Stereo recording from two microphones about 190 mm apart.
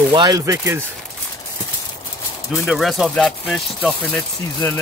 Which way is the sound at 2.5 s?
Centre (ahead or behind).